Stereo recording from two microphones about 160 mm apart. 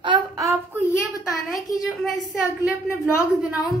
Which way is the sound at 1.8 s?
Centre (ahead or behind).